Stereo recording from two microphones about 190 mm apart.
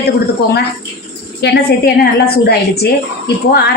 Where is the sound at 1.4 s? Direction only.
55° left (ahead or behind).